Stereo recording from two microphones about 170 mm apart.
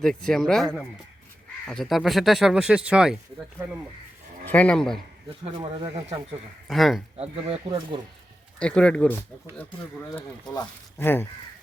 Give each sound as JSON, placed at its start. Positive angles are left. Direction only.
{"t": 0.0, "sound": "speech", "side_deg": 5}
{"t": 4.4, "sound": "speech", "side_deg": 10}
{"t": 5.4, "sound": "speech", "side_deg": -30}
{"t": 6.7, "sound": "speech", "side_deg": 0}
{"t": 7.2, "sound": "speech", "side_deg": -35}
{"t": 8.5, "sound": "speech", "side_deg": 5}
{"t": 10.5, "sound": "speech", "side_deg": 25}
{"t": 11.0, "sound": "speech", "side_deg": 10}